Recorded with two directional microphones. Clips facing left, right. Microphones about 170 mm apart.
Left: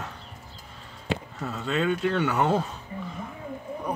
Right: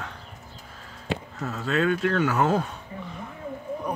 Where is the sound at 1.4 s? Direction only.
Centre (ahead or behind).